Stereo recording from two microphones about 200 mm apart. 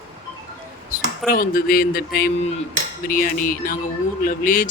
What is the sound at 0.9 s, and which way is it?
Speech, 45° left (ahead or behind).